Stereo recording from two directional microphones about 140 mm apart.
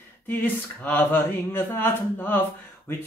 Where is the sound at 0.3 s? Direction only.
15° left (ahead or behind).